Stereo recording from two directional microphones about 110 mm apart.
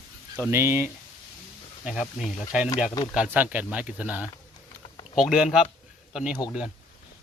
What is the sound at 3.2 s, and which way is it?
A man's voice, 15° right (ahead or behind).